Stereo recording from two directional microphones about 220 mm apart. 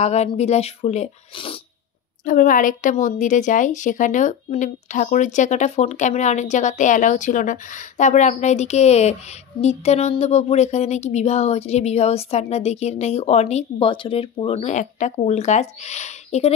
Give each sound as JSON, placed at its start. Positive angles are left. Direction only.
{"t": 0.0, "sound": "speech", "side_deg": 30}
{"t": 2.2, "sound": "a woman's voice", "side_deg": 40}